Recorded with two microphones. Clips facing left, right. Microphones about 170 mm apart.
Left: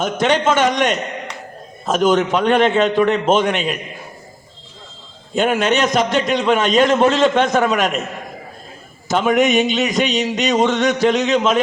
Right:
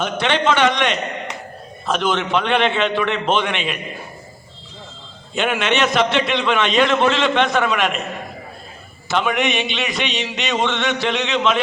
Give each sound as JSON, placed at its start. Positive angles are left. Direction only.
{"t": 0.0, "sound": "a man's voice", "side_deg": 45}
{"t": 5.3, "sound": "a man's voice", "side_deg": 40}
{"t": 9.0, "sound": "a man's voice", "side_deg": 40}